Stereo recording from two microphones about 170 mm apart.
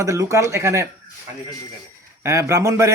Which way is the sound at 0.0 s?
15° right (ahead or behind).